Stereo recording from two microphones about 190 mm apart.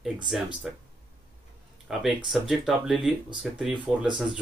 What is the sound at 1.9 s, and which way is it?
Speech, centre (ahead or behind).